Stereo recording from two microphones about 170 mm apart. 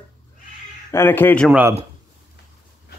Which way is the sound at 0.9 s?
15° left (ahead or behind).